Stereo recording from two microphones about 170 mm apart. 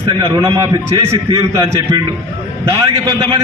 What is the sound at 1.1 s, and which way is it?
Speech, 35° right (ahead or behind).